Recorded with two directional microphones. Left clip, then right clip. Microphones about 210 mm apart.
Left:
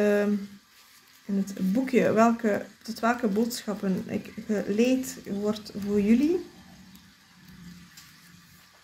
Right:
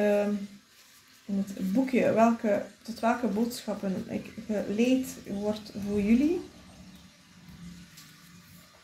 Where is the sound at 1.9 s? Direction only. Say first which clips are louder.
Left 2 dB; 35° left (ahead or behind).